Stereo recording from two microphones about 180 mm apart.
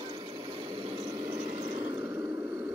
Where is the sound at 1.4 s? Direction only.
30° right (ahead or behind).